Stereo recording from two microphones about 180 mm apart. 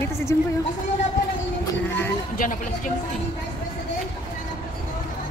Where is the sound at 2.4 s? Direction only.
50° left (ahead or behind).